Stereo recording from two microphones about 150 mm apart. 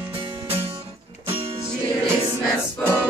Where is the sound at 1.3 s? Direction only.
20° right (ahead or behind).